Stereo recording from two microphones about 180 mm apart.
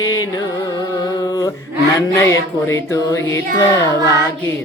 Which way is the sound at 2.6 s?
15° left (ahead or behind).